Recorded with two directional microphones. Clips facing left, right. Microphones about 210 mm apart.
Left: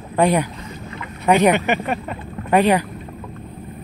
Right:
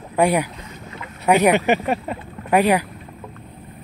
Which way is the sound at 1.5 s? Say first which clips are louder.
Right 2 dB; 35° right (ahead or behind).